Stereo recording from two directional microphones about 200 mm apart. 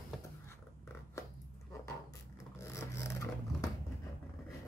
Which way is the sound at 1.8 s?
15° left (ahead or behind).